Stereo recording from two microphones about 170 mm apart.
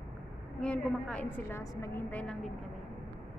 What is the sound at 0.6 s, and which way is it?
A woman's voice, 5° left (ahead or behind).